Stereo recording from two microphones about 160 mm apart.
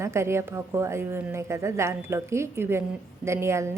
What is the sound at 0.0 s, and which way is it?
A woman's voice, 15° right (ahead or behind).